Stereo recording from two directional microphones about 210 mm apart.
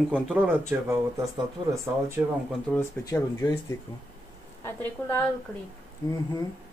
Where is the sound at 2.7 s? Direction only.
10° left (ahead or behind).